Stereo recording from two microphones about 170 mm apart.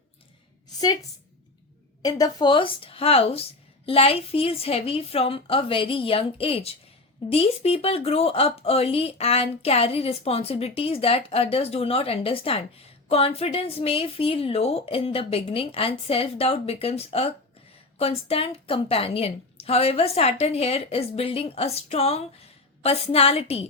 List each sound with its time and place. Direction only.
2.0 s speech: 20° left (ahead or behind)